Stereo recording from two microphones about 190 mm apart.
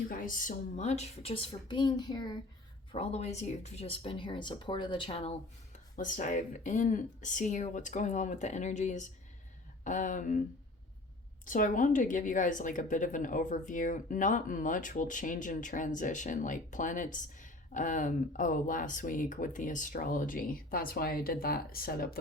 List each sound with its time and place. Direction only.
0.1 s speech: 45° left (ahead or behind); by 2.3 s 20° left (ahead or behind)
2.9 s speech: 30° left (ahead or behind)
6.0 s a woman's voice: 40° left (ahead or behind)
11.4 s a woman's voice: 45° left (ahead or behind)